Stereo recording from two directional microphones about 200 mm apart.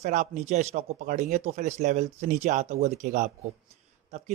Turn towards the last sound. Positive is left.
turn(degrees=-35)  # may be behind; listen again after turning